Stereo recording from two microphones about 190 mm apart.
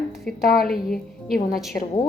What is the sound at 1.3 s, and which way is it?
Speech, 50° left (ahead or behind).